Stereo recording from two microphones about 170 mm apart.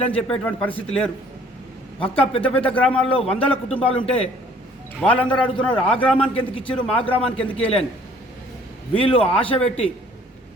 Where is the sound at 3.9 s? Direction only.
35° left (ahead or behind).